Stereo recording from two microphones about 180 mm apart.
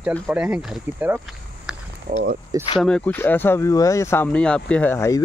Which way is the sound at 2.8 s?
5° left (ahead or behind).